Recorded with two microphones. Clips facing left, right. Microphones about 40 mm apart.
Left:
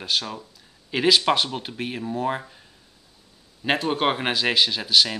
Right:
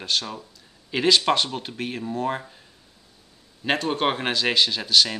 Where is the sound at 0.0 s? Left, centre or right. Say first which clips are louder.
Even; centre.